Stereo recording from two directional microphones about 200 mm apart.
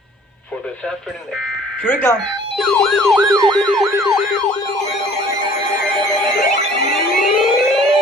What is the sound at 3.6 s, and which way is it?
Police car, centre (ahead or behind).